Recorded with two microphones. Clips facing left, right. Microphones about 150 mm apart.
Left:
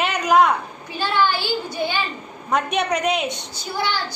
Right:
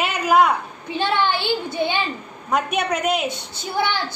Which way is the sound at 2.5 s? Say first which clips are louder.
Even; 5° right (ahead or behind).